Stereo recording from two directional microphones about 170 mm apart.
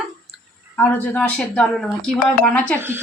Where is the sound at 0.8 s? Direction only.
10° left (ahead or behind).